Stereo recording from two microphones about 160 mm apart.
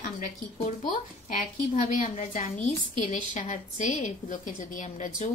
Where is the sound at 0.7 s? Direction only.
55° left (ahead or behind).